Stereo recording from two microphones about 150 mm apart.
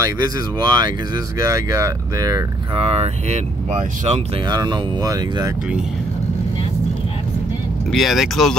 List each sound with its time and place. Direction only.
0.0 s speech: 25° right (ahead or behind)
2.8 s speech: 45° right (ahead or behind)
4.5 s speech: 25° right (ahead or behind)
7.9 s speech: centre (ahead or behind)